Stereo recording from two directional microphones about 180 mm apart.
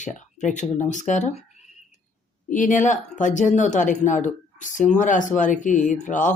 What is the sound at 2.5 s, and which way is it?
Speech, 45° left (ahead or behind).